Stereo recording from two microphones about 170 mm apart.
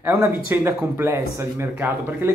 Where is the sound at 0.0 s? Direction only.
15° right (ahead or behind).